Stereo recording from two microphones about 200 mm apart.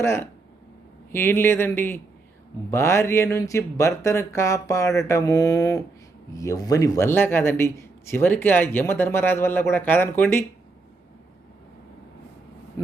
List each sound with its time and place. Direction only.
0.0 s a man's voice: 10° left (ahead or behind)